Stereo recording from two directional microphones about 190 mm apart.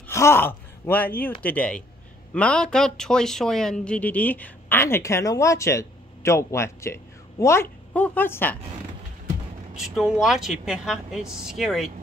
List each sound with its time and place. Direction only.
0.1 s speech: 15° left (ahead or behind)
9.8 s a woman's voice: centre (ahead or behind)